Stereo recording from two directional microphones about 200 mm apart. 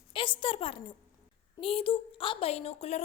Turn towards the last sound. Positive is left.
turn(degrees=35)  # may be behind; listen again after turning